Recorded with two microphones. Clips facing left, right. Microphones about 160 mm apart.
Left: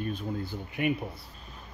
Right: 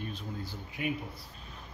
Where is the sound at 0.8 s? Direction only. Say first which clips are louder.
Left 6 dB; 60° left (ahead or behind).